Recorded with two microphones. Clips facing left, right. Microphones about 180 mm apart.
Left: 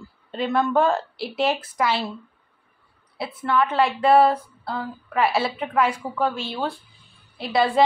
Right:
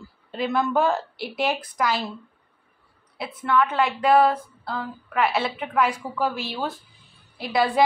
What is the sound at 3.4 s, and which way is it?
Speech, 5° left (ahead or behind).